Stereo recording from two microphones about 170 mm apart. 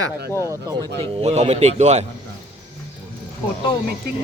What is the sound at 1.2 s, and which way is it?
Speech, 40° right (ahead or behind).